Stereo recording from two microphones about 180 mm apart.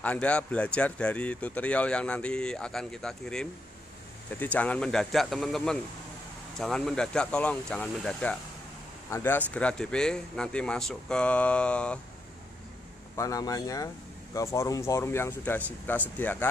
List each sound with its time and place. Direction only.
0.0 s speech: 10° left (ahead or behind)
13.1 s a man's voice: 20° left (ahead or behind)